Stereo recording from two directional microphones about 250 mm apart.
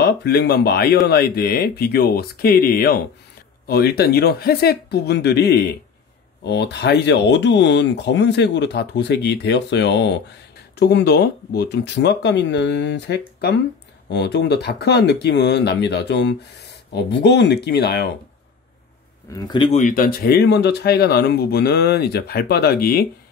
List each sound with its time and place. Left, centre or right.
0.0 s speech: left
19.3 s speech: centre; by 23.0 s left